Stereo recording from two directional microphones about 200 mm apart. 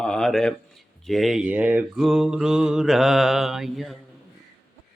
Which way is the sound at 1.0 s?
Centre (ahead or behind).